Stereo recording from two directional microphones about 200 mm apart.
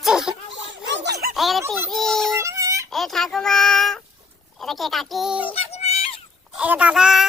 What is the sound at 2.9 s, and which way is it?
Speech, centre (ahead or behind).